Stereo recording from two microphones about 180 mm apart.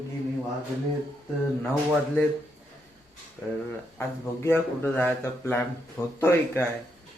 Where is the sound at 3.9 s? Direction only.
10° left (ahead or behind).